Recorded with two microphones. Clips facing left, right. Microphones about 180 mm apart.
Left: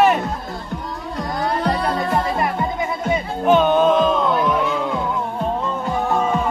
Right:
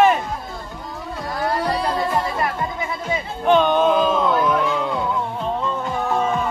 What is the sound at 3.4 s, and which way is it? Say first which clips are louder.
Music: left 1 dB; 5° left (ahead or behind).